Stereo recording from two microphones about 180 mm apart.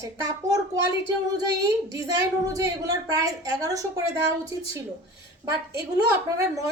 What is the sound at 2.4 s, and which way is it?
A woman's voice, 20° right (ahead or behind).